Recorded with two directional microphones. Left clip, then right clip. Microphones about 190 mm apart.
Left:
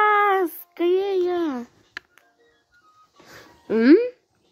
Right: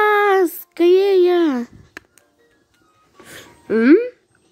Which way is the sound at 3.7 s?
5° left (ahead or behind).